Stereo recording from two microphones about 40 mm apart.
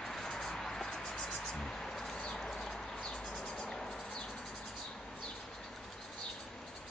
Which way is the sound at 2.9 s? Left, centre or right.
Left.